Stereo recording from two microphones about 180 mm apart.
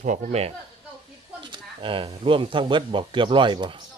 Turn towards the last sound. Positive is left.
turn(degrees=-25)  # may be behind; listen again after turning